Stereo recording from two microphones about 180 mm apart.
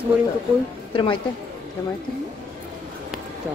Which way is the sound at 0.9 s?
30° left (ahead or behind).